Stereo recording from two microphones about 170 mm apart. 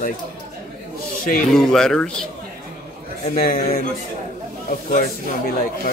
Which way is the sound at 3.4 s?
60° left (ahead or behind).